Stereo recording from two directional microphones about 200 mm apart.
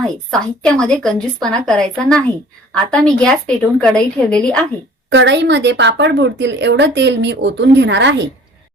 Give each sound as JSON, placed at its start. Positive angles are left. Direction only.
{"t": 0.3, "sound": "a woman's voice", "side_deg": 5}
{"t": 5.1, "sound": "a woman's voice", "side_deg": -60}